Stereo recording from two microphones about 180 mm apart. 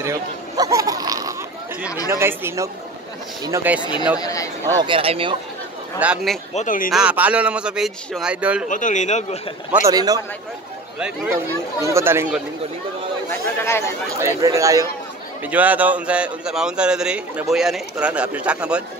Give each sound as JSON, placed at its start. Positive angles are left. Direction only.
{"t": 0.0, "sound": "a sound", "side_deg": -15}
{"t": 2.0, "sound": "speech", "side_deg": -15}
{"t": 4.2, "sound": "speech", "side_deg": 20}
{"t": 4.8, "sound": "speech", "side_deg": -30}
{"t": 5.9, "sound": "speech", "side_deg": -5}
{"t": 6.5, "sound": "speech", "side_deg": 45}
{"t": 6.9, "sound": "a man's voice", "side_deg": -5}
{"t": 8.6, "sound": "speech", "side_deg": 45}
{"t": 9.8, "sound": "speech", "side_deg": -20}
{"t": 11.0, "sound": "a man's voice", "side_deg": -5}
{"t": 13.3, "sound": "speech", "side_deg": 15}
{"t": 14.2, "sound": "speech", "side_deg": -15}